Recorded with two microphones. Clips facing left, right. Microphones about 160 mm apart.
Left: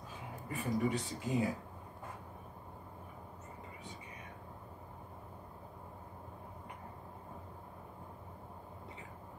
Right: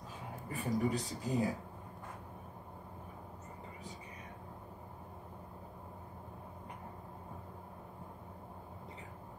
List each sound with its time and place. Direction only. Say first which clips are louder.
0.5 s speech: even; 35° right (ahead or behind)